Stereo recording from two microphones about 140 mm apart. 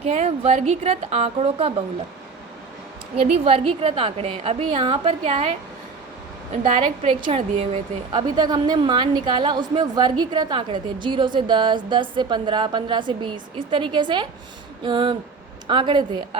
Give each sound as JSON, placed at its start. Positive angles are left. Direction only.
{"t": 0.0, "sound": "a woman's voice", "side_deg": -50}
{"t": 3.4, "sound": "a woman's voice", "side_deg": -45}
{"t": 6.5, "sound": "a woman's voice", "side_deg": -60}
{"t": 6.7, "sound": "a woman's voice", "side_deg": -35}